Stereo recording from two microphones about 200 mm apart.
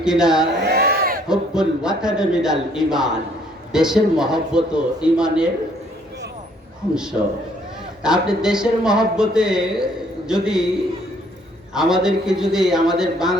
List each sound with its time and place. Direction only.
0.0 s speech: 5° right (ahead or behind)
0.6 s crowd: 55° right (ahead or behind)
1.3 s speech: 5° right (ahead or behind)
6.9 s speech: 5° right (ahead or behind)
11.7 s speech: 5° right (ahead or behind)